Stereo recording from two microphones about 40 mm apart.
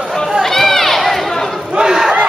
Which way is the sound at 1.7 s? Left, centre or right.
Centre.